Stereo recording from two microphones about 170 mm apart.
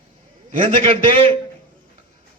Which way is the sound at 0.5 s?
30° right (ahead or behind).